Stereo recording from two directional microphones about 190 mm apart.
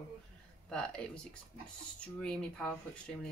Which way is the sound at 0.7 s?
5° left (ahead or behind).